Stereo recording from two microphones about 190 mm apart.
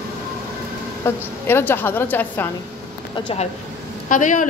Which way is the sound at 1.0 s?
10° left (ahead or behind).